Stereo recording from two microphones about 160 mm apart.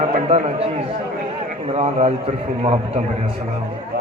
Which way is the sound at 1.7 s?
40° right (ahead or behind).